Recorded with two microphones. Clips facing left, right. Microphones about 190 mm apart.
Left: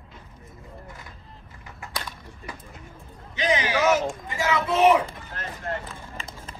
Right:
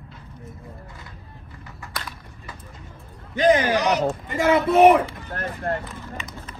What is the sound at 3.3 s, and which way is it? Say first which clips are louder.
Speech: right 7 dB; 55° right (ahead or behind).